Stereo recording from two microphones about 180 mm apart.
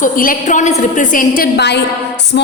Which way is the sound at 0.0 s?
50° left (ahead or behind).